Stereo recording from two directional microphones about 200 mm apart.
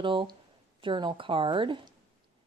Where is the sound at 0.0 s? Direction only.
25° right (ahead or behind).